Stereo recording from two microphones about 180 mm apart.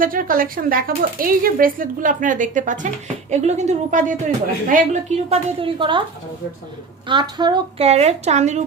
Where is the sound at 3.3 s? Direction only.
40° right (ahead or behind).